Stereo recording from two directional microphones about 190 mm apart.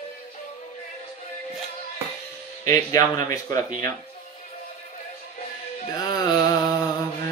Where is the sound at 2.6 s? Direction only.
15° left (ahead or behind).